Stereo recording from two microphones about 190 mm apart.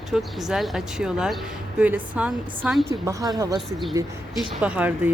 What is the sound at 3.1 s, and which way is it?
Speech, 20° right (ahead or behind).